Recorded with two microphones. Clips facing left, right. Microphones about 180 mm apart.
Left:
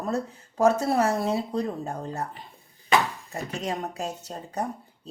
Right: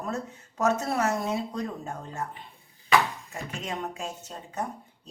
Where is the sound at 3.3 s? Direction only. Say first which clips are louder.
Left 4 dB; 40° left (ahead or behind).